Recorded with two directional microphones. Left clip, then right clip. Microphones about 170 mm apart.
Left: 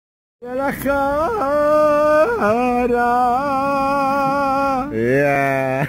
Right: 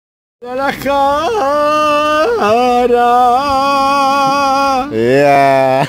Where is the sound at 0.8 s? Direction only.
5° right (ahead or behind).